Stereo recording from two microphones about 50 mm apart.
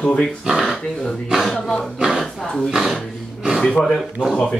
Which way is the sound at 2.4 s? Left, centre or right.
Centre.